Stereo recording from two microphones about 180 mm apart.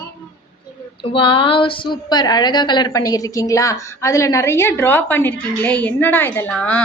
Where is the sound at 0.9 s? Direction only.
30° left (ahead or behind).